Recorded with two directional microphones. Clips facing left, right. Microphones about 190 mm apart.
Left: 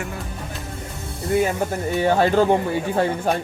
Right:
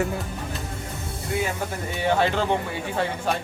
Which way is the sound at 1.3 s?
45° left (ahead or behind).